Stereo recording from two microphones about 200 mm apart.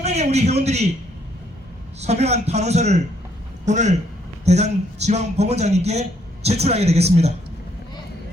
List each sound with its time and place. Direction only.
0.0 s a man's voice: 30° right (ahead or behind)
2.0 s a man's voice: 30° right (ahead or behind)